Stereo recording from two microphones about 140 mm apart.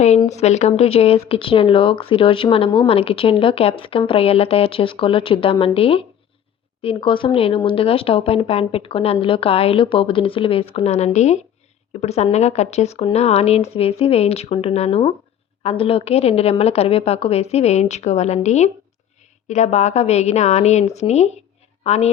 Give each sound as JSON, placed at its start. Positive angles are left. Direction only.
{"t": 0.3, "sound": "a woman's voice", "side_deg": 50}